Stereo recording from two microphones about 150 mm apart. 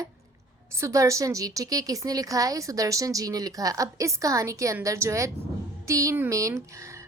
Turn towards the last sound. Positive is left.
turn(degrees=-20)  # may be behind; listen again after turning